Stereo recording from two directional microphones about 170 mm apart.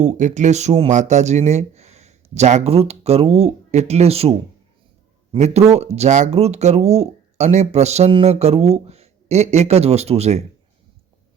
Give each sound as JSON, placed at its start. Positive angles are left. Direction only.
{"t": 0.0, "sound": "speech", "side_deg": -45}